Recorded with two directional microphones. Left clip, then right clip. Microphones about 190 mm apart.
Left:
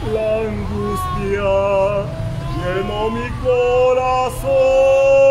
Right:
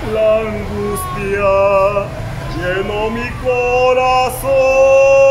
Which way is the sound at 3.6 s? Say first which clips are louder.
Right 3 dB; 20° left (ahead or behind).